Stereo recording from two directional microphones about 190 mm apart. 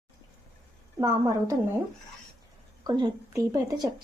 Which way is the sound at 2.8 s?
20° right (ahead or behind).